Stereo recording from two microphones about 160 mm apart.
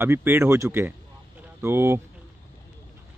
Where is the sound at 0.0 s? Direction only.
15° right (ahead or behind).